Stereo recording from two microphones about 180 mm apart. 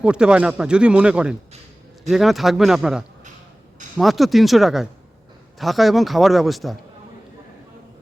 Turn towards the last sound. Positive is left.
turn(degrees=0)  # may be behind; listen again after turning